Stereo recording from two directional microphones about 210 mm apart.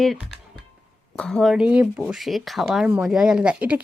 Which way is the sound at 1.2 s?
5° left (ahead or behind).